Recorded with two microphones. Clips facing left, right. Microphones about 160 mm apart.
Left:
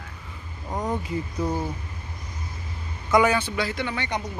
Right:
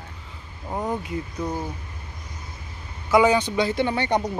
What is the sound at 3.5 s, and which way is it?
Speech, 25° right (ahead or behind).